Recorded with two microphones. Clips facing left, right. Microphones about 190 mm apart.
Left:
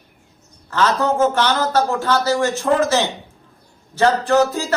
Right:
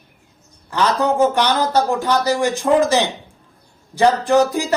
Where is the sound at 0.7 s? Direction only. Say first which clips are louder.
Even; 15° right (ahead or behind).